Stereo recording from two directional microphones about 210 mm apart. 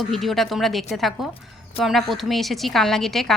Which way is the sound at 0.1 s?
Centre (ahead or behind).